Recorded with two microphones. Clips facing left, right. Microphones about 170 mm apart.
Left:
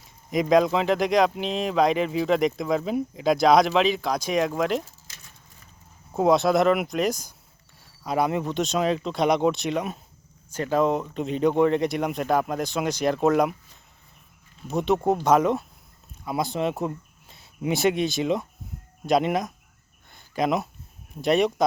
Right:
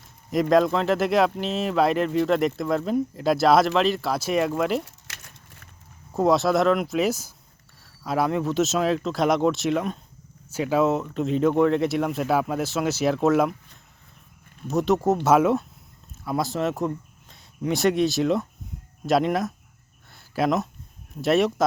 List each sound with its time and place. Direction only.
0.3 s speech: centre (ahead or behind)
4.9 s a sound: 70° right (ahead or behind)
6.1 s speech: centre (ahead or behind)
14.7 s speech: centre (ahead or behind)
20.1 s a sound: 5° right (ahead or behind)
21.2 s speech: centre (ahead or behind)